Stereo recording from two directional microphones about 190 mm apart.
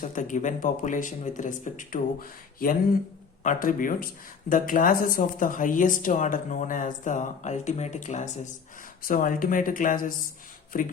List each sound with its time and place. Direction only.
0.0 s speech: 45° left (ahead or behind)